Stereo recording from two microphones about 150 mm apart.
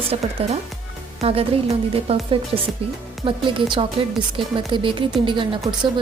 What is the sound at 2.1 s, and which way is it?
Speech, 40° right (ahead or behind).